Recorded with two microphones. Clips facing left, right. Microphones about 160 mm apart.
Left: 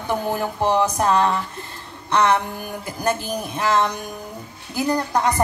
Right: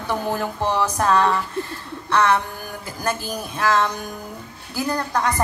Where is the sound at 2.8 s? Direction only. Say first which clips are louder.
Left 2 dB; 15° left (ahead or behind).